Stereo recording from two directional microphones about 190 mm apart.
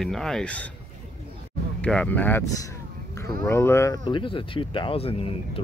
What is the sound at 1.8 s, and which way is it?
Speech, 5° left (ahead or behind).